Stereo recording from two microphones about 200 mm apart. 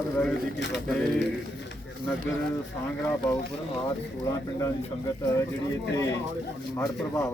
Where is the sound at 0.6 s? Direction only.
60° left (ahead or behind).